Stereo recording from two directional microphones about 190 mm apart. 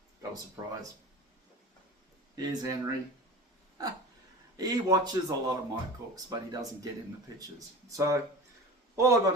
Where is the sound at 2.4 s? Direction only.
20° right (ahead or behind).